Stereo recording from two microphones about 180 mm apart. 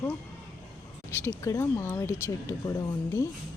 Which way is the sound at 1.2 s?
15° left (ahead or behind).